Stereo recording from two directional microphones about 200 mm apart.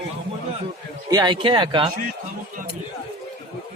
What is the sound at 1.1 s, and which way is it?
Speech, 20° right (ahead or behind).